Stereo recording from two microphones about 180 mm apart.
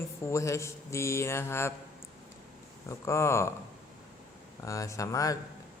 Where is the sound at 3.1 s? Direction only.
15° left (ahead or behind).